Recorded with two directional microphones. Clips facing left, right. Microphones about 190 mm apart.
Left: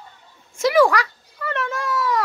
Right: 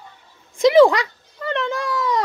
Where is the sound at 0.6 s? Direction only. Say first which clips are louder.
Right 4 dB; 20° right (ahead or behind).